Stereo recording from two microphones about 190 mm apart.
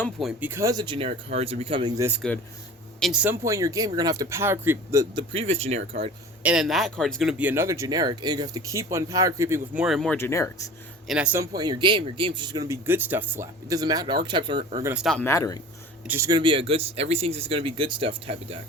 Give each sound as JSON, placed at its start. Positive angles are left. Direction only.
{"t": 0.0, "sound": "speech", "side_deg": 0}
{"t": 2.0, "sound": "speech", "side_deg": -10}
{"t": 5.3, "sound": "speech", "side_deg": -30}
{"t": 6.4, "sound": "speech", "side_deg": -5}
{"t": 9.8, "sound": "speech", "side_deg": 0}
{"t": 10.2, "sound": "speech", "side_deg": 15}
{"t": 11.1, "sound": "speech", "side_deg": -10}
{"t": 11.5, "sound": "speech", "side_deg": -20}
{"t": 14.8, "sound": "speech", "side_deg": 0}
{"t": 15.3, "sound": "speech", "side_deg": 15}
{"t": 16.0, "sound": "speech", "side_deg": -15}